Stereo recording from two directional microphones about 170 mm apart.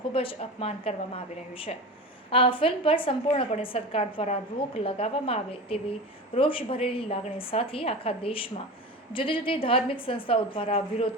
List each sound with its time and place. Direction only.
0.1 s a woman's voice: 30° left (ahead or behind)